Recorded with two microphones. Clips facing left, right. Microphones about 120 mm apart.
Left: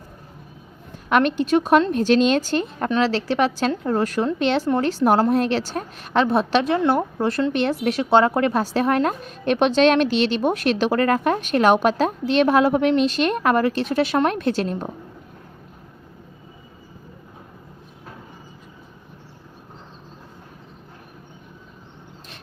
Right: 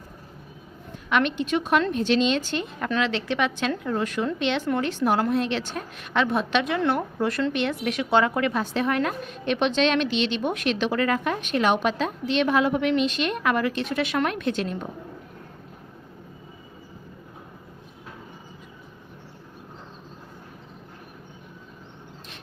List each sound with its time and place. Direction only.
1.1 s a woman's voice: 40° left (ahead or behind)